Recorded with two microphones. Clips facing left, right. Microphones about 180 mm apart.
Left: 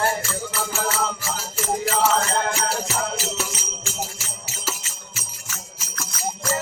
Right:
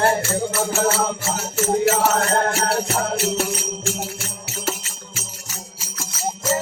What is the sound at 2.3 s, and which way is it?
Music, 45° right (ahead or behind).